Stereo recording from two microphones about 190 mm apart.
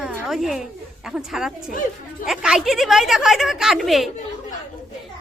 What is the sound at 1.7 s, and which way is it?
Speech, 45° left (ahead or behind).